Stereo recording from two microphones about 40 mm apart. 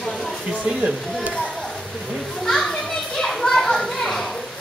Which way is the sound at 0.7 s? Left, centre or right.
Centre.